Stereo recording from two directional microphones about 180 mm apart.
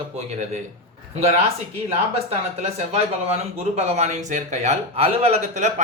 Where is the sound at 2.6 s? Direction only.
35° right (ahead or behind).